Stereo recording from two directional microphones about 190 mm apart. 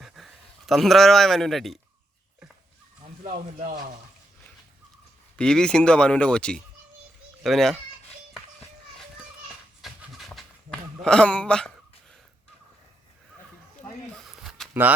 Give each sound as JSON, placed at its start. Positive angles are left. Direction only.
{"t": 0.0, "sound": "a man's voice", "side_deg": 0}
{"t": 3.2, "sound": "speech", "side_deg": -40}
{"t": 5.4, "sound": "speech", "side_deg": 5}
{"t": 9.8, "sound": "a sound", "side_deg": 0}
{"t": 14.7, "sound": "speech", "side_deg": -10}